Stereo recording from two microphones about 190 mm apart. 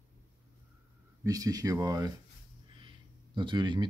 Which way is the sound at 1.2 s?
20° right (ahead or behind).